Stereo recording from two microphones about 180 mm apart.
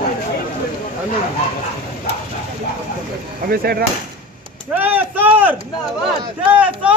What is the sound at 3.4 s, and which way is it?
Speech, 60° right (ahead or behind).